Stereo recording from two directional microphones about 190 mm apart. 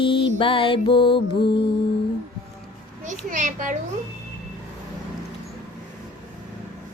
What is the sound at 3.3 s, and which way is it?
Speech, 40° right (ahead or behind).